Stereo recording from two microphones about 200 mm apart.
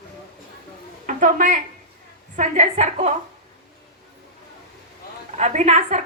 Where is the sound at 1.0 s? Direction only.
40° right (ahead or behind).